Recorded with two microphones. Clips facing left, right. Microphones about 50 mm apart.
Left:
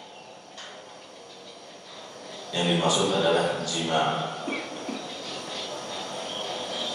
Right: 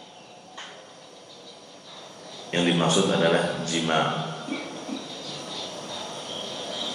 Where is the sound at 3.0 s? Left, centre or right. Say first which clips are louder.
Right 1 dB; right.